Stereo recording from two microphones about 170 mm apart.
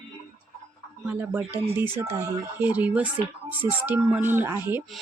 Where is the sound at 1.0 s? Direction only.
10° right (ahead or behind).